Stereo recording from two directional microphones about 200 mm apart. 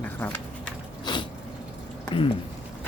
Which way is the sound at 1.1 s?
20° left (ahead or behind).